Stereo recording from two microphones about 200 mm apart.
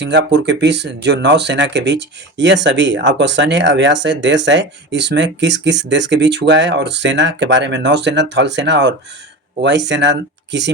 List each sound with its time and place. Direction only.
0.0 s speech: 60° right (ahead or behind)